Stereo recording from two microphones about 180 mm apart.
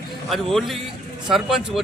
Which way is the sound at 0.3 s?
Centre (ahead or behind).